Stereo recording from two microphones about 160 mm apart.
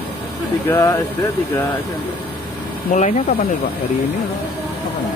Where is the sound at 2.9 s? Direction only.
50° left (ahead or behind).